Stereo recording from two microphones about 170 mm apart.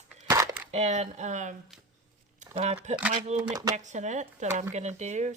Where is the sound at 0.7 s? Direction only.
40° right (ahead or behind).